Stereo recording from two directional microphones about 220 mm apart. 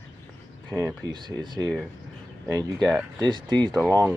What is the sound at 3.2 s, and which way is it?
Speech, 20° right (ahead or behind).